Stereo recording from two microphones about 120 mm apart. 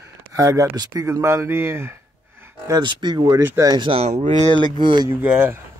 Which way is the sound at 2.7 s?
40° right (ahead or behind).